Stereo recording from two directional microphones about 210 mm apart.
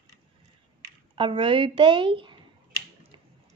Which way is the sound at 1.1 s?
25° right (ahead or behind).